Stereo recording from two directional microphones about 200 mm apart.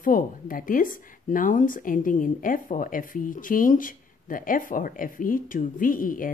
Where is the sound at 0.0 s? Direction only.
45° left (ahead or behind).